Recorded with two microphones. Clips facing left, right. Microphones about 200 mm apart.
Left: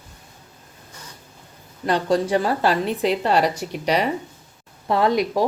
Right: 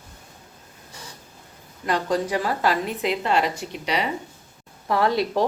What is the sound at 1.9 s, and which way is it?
A woman's voice, 35° left (ahead or behind).